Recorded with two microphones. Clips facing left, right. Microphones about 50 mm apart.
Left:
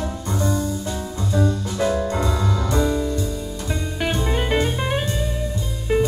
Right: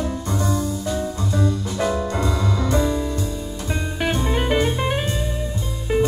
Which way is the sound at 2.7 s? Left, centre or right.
Centre.